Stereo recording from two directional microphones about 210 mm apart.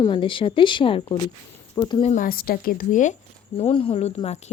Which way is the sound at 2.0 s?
35° left (ahead or behind).